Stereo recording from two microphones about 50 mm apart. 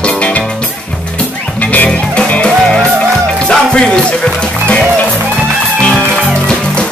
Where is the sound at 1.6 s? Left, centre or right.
Left.